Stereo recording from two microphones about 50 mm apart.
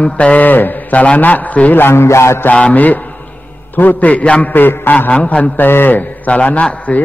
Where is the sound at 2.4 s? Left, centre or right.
Left.